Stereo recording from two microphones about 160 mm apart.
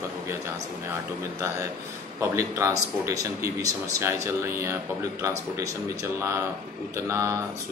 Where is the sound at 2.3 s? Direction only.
20° right (ahead or behind).